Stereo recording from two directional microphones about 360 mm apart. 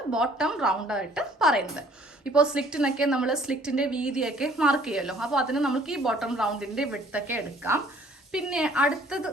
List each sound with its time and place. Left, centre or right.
0.1 s a woman's voice: centre